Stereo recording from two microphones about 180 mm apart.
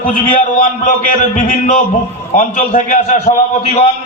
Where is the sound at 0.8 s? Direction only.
45° left (ahead or behind).